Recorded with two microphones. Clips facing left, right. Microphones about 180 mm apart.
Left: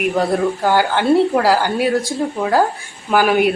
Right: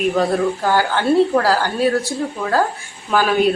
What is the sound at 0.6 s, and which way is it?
Speech, 15° left (ahead or behind).